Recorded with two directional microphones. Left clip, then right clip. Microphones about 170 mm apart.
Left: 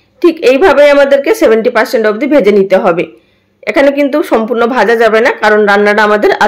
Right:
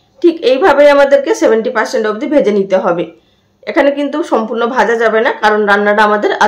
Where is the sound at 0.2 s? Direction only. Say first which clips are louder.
Left 3 dB; 20° left (ahead or behind).